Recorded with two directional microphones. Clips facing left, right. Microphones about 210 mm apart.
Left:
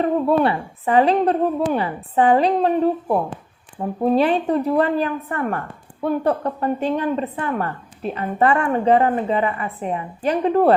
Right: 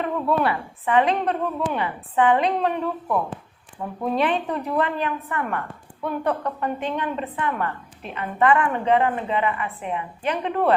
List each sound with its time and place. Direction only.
0.0 s a woman's voice: 30° left (ahead or behind)